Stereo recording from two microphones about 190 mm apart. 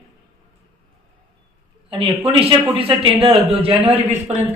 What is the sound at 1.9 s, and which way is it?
A man's voice, 30° right (ahead or behind).